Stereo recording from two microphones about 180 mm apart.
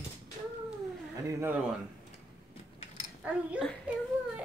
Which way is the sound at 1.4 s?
10° right (ahead or behind).